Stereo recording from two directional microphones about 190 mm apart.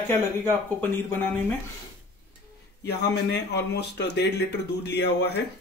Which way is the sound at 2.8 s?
65° left (ahead or behind).